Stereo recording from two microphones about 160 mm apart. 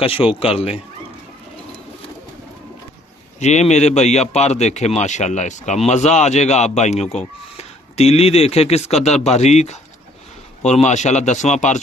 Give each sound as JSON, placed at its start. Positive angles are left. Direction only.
{"t": 0.0, "sound": "speech", "side_deg": 35}
{"t": 3.4, "sound": "speech", "side_deg": 45}